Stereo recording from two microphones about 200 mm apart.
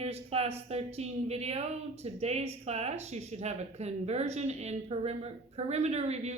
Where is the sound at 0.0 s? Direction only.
30° right (ahead or behind).